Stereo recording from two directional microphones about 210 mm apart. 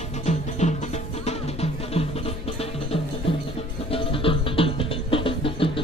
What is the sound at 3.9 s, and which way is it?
Music, 25° left (ahead or behind).